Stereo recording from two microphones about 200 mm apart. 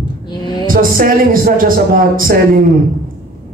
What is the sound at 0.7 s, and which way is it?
A man's voice, 45° right (ahead or behind).